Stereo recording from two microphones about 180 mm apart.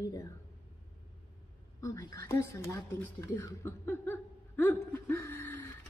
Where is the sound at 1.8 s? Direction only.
15° left (ahead or behind).